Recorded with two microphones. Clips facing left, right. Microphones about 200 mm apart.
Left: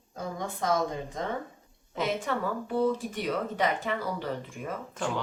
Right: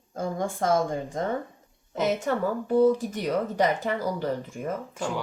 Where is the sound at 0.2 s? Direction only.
50° right (ahead or behind).